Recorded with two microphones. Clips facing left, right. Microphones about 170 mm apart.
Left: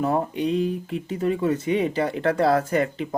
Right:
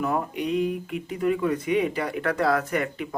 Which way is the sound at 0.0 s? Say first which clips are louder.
Left 3 dB; 30° left (ahead or behind).